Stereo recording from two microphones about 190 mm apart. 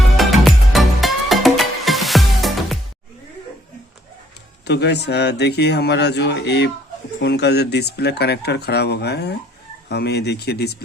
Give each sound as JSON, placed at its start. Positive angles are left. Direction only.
{"t": 0.2, "sound": "music", "side_deg": 0}
{"t": 4.6, "sound": "speech", "side_deg": 60}